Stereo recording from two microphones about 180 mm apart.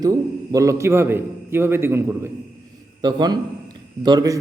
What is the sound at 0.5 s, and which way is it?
A man's voice, 15° right (ahead or behind).